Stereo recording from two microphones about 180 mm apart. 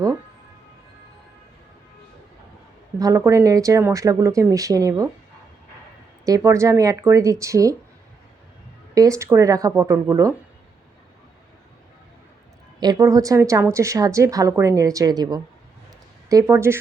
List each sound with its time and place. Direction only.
3.0 s a woman's voice: 15° right (ahead or behind)
6.2 s a woman's voice: 15° right (ahead or behind)
9.0 s a woman's voice: 15° right (ahead or behind)
12.8 s a woman's voice: 20° right (ahead or behind)